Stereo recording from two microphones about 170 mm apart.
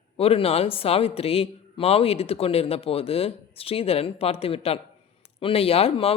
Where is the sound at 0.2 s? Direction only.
35° left (ahead or behind).